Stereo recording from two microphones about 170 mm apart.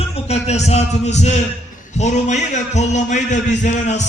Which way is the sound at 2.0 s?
45° left (ahead or behind).